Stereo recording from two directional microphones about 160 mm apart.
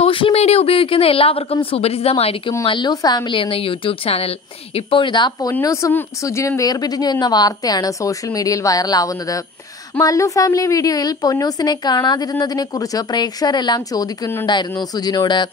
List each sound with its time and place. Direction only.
0.0 s a woman's voice: 35° left (ahead or behind)